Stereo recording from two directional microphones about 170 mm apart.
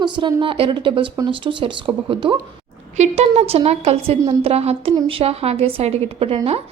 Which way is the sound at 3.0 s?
40° right (ahead or behind).